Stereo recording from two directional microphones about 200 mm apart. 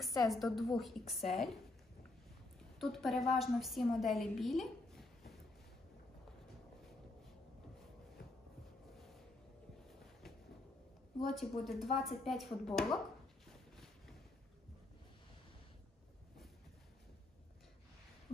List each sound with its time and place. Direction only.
0.0 s a woman's voice: centre (ahead or behind)
2.8 s a woman's voice: centre (ahead or behind)
11.2 s a woman's voice: centre (ahead or behind)